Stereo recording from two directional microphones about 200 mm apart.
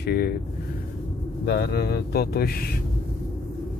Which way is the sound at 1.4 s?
55° left (ahead or behind).